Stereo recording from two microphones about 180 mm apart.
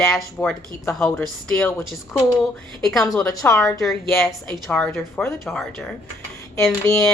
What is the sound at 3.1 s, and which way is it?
Speech, 15° left (ahead or behind).